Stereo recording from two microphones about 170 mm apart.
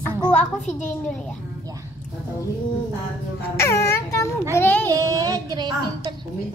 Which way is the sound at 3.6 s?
15° left (ahead or behind).